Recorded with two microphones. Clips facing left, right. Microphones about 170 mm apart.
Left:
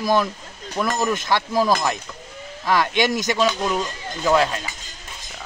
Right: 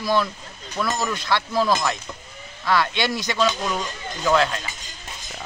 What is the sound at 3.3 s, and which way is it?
Speech, 10° left (ahead or behind).